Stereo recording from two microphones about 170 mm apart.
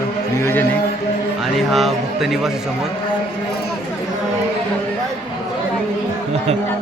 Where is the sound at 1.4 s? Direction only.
Centre (ahead or behind).